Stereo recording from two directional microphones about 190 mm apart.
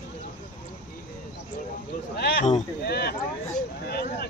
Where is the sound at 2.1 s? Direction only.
60° left (ahead or behind).